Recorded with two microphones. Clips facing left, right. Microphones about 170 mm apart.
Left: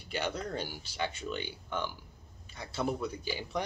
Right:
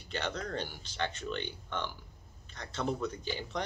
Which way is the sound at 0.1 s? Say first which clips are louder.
Left 1 dB; 10° left (ahead or behind).